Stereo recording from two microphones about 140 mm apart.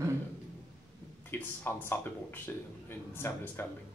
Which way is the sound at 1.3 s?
15° left (ahead or behind).